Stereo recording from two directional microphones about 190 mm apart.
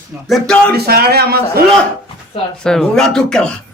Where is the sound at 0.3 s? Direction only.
Centre (ahead or behind).